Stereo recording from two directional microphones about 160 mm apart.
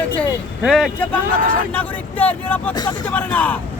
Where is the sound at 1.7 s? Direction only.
10° left (ahead or behind).